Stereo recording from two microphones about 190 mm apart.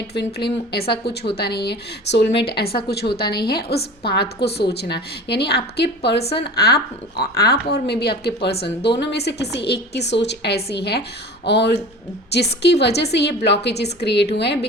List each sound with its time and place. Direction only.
0.7 s speech: 60° left (ahead or behind)